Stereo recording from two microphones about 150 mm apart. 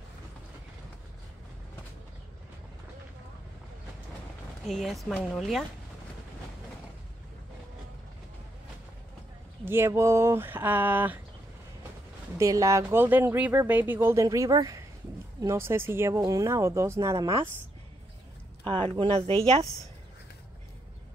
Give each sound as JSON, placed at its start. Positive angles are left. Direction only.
{"t": 4.6, "sound": "speech", "side_deg": 0}
{"t": 9.7, "sound": "speech", "side_deg": -15}
{"t": 12.4, "sound": "speech", "side_deg": -20}
{"t": 18.6, "sound": "speech", "side_deg": -35}